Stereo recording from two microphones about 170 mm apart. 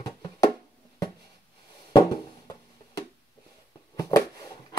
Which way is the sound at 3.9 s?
20° left (ahead or behind).